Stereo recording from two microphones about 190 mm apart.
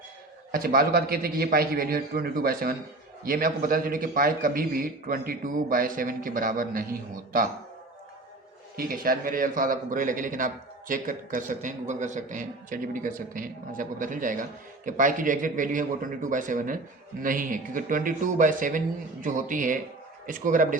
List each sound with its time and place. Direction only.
0.5 s a man's voice: 50° right (ahead or behind)
8.7 s a man's voice: 50° right (ahead or behind)